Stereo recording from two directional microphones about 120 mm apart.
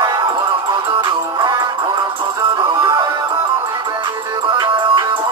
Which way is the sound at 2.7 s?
40° right (ahead or behind).